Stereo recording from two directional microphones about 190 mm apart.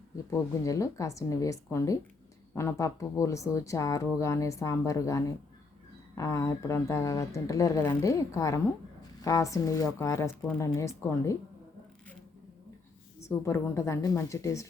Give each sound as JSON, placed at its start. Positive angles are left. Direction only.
{"t": 0.3, "sound": "speech", "side_deg": 15}
{"t": 13.1, "sound": "speech", "side_deg": 15}